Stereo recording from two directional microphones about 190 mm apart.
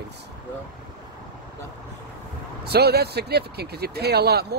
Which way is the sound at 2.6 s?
55° right (ahead or behind).